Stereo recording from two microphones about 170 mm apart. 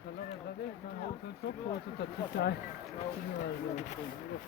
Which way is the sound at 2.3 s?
70° left (ahead or behind).